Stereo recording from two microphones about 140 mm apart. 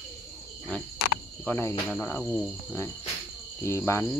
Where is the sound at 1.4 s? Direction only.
15° left (ahead or behind).